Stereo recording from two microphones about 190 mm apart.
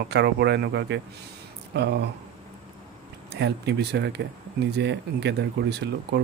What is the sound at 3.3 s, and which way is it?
Speech, 60° right (ahead or behind).